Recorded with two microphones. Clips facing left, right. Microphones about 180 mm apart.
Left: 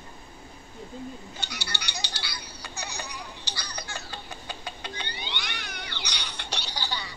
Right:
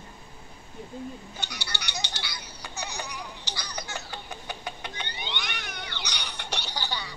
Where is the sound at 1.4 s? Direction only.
20° right (ahead or behind).